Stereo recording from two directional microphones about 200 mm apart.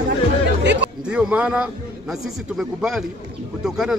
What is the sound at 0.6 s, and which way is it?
Music, 60° right (ahead or behind).